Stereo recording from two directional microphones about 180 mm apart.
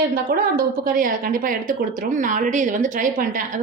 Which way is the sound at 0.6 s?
50° right (ahead or behind).